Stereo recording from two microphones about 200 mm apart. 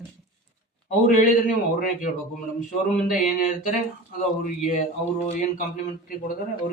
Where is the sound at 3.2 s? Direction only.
40° left (ahead or behind).